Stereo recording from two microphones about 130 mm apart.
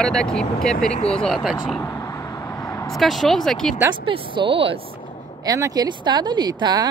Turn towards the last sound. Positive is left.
turn(degrees=-30)  # may be behind; listen again after turning